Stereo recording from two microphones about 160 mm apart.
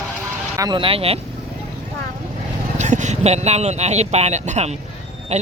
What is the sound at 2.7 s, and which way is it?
Speech, 50° right (ahead or behind).